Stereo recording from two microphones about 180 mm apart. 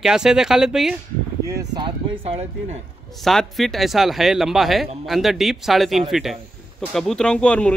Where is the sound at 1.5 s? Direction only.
20° right (ahead or behind).